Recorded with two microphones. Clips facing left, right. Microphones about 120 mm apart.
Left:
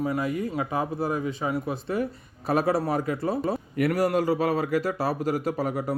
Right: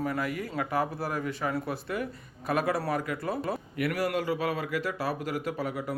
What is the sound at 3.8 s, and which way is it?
A man's voice, 40° left (ahead or behind).